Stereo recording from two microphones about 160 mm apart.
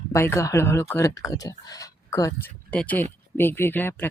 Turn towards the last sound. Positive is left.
turn(degrees=15)  # may be behind; listen again after turning